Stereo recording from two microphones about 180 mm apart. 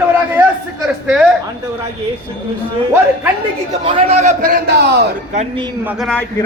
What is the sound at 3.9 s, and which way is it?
A man's voice, 30° right (ahead or behind).